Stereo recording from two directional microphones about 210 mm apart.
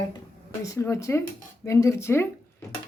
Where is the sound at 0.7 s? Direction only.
15° left (ahead or behind).